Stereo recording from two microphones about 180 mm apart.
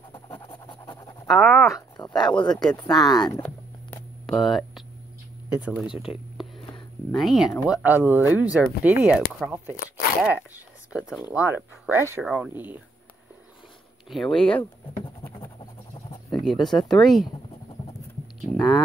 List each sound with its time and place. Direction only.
0.5 s pant: 25° left (ahead or behind)
1.2 s speech: centre (ahead or behind)
1.8 s speech: 20° left (ahead or behind)
2.3 s speech: 5° left (ahead or behind)
2.9 s speech: 25° left (ahead or behind)
3.4 s a sound: 5° left (ahead or behind)
5.7 s speech: centre (ahead or behind)
7.1 s speech: centre (ahead or behind)
9.4 s speech: 5° left (ahead or behind)
10.2 s speech: 10° right (ahead or behind)
14.0 s speech: centre (ahead or behind)
16.3 s a sound: centre (ahead or behind)
16.9 s speech: centre (ahead or behind)
18.5 s speech: 30° left (ahead or behind)